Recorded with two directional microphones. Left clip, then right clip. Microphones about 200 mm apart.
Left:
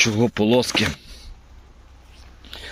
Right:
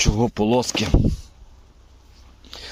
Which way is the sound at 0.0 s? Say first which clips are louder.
Left 2 dB; 15° right (ahead or behind).